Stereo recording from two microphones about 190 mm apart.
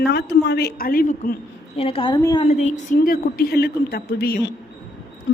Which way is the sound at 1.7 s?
30° left (ahead or behind).